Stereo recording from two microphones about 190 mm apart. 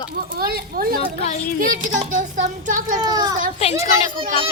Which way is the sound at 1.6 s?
45° right (ahead or behind).